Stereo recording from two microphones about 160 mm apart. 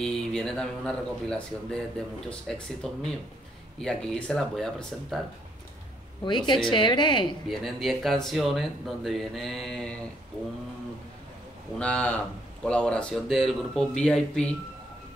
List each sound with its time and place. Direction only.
0.0 s speech: 5° left (ahead or behind)
6.2 s a woman's voice: 30° left (ahead or behind)
7.4 s speech: centre (ahead or behind)
11.8 s speech: 5° left (ahead or behind)